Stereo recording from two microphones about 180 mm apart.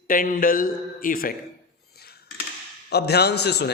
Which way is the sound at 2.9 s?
65° left (ahead or behind).